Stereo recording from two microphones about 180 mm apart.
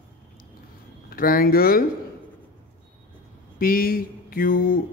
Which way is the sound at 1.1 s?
55° left (ahead or behind).